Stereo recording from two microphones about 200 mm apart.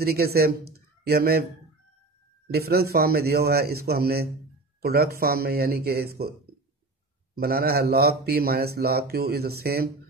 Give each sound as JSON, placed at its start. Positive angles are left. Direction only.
{"t": 0.0, "sound": "speech", "side_deg": -50}
{"t": 2.4, "sound": "speech", "side_deg": -50}
{"t": 7.3, "sound": "speech", "side_deg": -50}